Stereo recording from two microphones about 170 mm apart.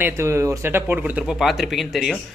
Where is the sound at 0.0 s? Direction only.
15° right (ahead or behind).